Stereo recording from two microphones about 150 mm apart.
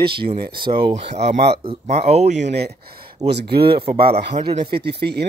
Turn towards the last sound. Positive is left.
turn(degrees=-90)